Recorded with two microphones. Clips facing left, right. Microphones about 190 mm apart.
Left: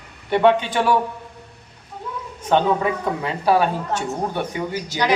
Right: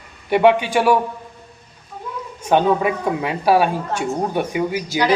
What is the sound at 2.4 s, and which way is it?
A man's voice, 10° right (ahead or behind).